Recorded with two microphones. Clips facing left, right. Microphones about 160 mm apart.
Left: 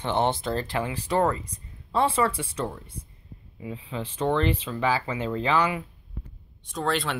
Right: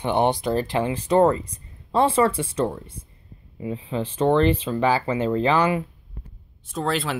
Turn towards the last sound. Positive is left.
turn(degrees=-5)  # may be behind; listen again after turning